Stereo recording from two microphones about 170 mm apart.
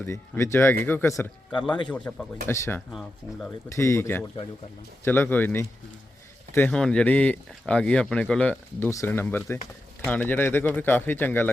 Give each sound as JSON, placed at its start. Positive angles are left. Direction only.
{"t": 0.0, "sound": "speech", "side_deg": 15}